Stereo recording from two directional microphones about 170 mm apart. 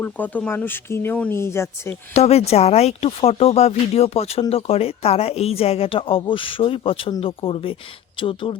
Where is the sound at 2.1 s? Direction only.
40° left (ahead or behind).